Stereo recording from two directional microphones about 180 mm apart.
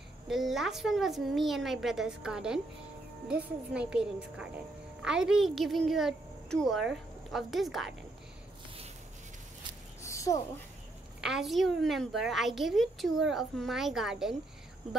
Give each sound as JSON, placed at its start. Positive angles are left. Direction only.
{"t": 0.3, "sound": "a woman's voice", "side_deg": 0}
{"t": 10.0, "sound": "a sound", "side_deg": 15}
{"t": 11.1, "sound": "a woman's voice", "side_deg": -5}